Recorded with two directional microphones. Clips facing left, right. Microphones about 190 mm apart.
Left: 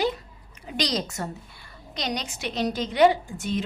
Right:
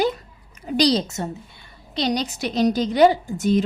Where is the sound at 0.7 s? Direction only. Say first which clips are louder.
Right 8 dB; 35° right (ahead or behind).